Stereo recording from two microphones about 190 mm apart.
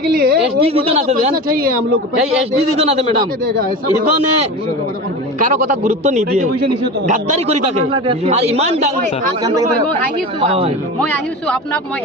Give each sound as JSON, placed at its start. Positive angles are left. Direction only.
{"t": 0.0, "sound": "a sound", "side_deg": -55}
{"t": 0.6, "sound": "a man's voice", "side_deg": -30}
{"t": 1.3, "sound": "speech", "side_deg": -50}
{"t": 2.7, "sound": "a man's voice", "side_deg": -35}
{"t": 5.4, "sound": "a man's voice", "side_deg": -40}